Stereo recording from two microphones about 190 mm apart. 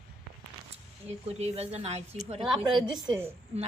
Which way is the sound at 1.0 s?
35° right (ahead or behind).